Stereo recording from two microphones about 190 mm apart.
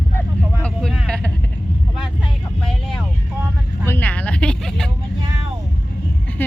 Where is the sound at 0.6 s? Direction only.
Centre (ahead or behind).